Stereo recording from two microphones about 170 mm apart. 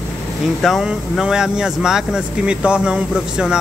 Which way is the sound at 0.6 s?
Centre (ahead or behind).